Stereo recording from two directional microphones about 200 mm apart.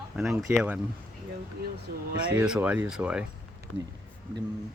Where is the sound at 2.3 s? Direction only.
5° right (ahead or behind).